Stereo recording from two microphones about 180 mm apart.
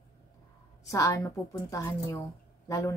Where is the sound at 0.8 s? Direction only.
20° left (ahead or behind).